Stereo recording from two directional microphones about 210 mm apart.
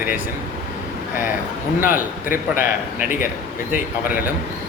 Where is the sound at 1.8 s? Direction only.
40° left (ahead or behind).